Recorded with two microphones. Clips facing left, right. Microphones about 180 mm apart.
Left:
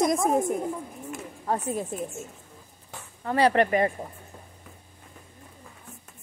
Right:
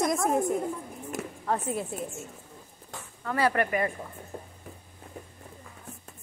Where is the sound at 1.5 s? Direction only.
40° left (ahead or behind).